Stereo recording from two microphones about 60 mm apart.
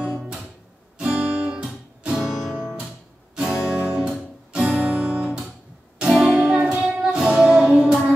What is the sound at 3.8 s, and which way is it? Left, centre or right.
Guitar, centre.